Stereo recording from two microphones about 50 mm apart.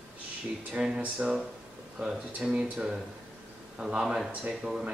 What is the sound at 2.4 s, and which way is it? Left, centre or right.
Speech, right.